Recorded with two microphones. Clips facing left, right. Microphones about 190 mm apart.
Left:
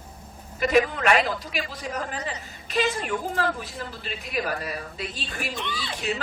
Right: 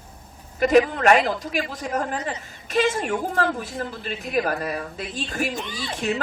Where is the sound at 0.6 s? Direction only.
45° right (ahead or behind).